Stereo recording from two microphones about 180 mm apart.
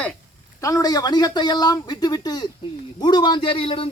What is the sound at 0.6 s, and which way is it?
A man's voice, 20° left (ahead or behind).